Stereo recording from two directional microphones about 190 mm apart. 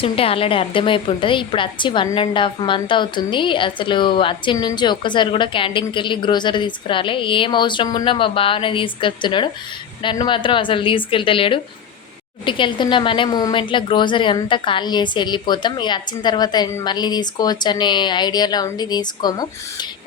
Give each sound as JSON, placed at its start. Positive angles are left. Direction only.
{"t": 0.0, "sound": "a woman's voice", "side_deg": 30}